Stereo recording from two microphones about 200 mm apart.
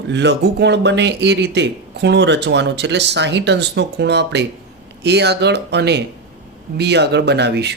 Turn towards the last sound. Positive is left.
turn(degrees=-55)  # may be behind; listen again after turning